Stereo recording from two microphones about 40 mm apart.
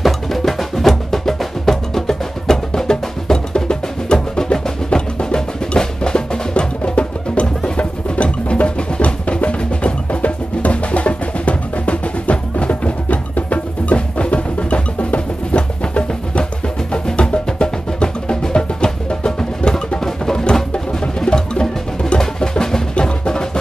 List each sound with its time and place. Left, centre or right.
0.0 s music: centre; by 23.6 s left